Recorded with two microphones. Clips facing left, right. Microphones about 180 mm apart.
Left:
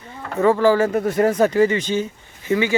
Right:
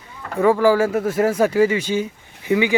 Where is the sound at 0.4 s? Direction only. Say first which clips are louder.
Even; 10° right (ahead or behind).